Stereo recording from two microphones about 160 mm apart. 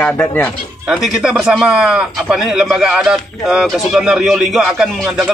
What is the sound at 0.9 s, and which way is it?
A man's voice, centre (ahead or behind).